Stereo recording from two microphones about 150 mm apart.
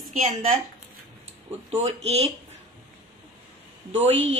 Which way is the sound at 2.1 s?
45° right (ahead or behind).